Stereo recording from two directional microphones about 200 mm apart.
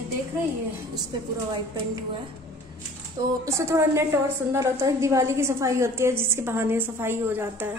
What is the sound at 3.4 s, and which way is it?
A woman's voice, 15° right (ahead or behind).